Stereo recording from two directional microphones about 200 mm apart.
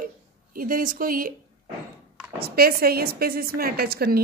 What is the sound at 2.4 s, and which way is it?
A woman's voice, 50° right (ahead or behind).